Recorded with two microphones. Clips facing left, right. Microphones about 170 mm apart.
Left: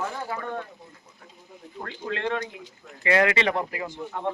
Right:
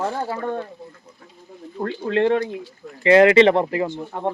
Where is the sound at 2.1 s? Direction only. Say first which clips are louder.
Right 10 dB; 35° right (ahead or behind).